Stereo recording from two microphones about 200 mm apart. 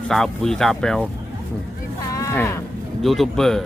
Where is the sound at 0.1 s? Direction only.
Centre (ahead or behind).